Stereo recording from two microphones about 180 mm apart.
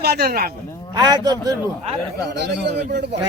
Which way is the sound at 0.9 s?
25° right (ahead or behind).